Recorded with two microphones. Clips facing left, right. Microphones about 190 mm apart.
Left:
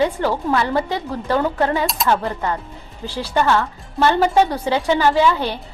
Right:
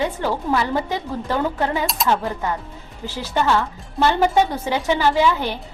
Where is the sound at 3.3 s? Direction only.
15° right (ahead or behind).